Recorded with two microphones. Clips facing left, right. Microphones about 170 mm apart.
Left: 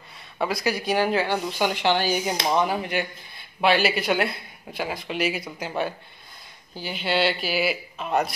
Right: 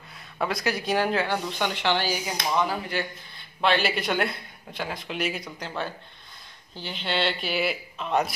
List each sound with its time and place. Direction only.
0.4 s speech: 5° left (ahead or behind)
1.8 s speech: 15° left (ahead or behind)
3.6 s speech: 5° left (ahead or behind)